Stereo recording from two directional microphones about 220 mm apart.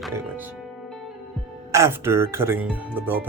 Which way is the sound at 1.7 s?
10° right (ahead or behind).